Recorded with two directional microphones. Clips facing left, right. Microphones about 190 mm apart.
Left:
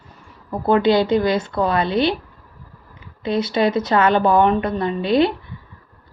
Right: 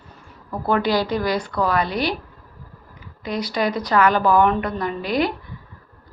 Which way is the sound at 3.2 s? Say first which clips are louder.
Left 5 dB; 25° left (ahead or behind).